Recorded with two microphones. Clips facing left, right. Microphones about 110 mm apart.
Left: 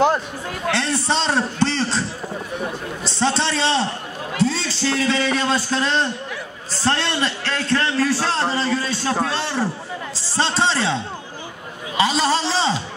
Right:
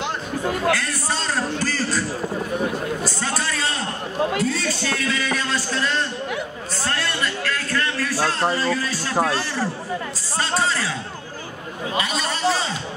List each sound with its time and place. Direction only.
0.7 s a man's voice: 25° left (ahead or behind)
3.0 s a sound: 25° left (ahead or behind)
4.4 s a man's voice: 25° left (ahead or behind)
12.0 s a man's voice: 30° left (ahead or behind)